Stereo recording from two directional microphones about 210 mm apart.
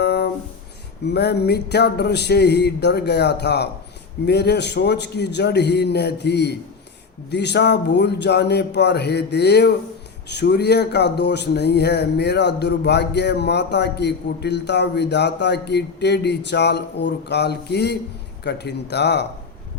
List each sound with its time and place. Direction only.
0.0 s music: 50° left (ahead or behind)
1.0 s speech: 50° left (ahead or behind)